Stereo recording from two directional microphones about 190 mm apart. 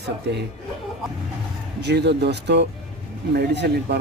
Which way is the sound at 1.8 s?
60° right (ahead or behind).